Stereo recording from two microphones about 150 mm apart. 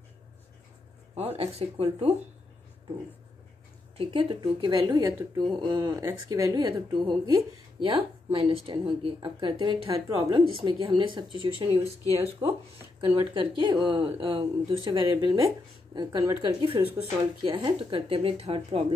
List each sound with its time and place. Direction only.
1.1 s speech: 40° right (ahead or behind)
4.0 s speech: 35° right (ahead or behind)
5.0 s a woman's voice: 20° right (ahead or behind)
5.5 s a woman's voice: 30° right (ahead or behind)
13.1 s a woman's voice: 30° right (ahead or behind)